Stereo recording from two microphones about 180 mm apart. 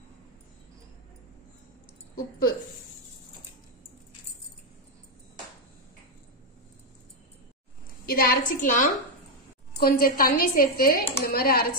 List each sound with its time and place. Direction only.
2.1 s a woman's voice: 55° left (ahead or behind)
8.0 s a woman's voice: 55° left (ahead or behind)